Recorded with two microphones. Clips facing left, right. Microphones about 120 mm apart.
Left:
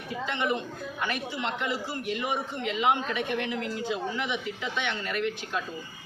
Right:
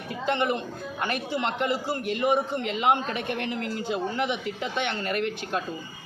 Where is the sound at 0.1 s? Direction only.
55° right (ahead or behind).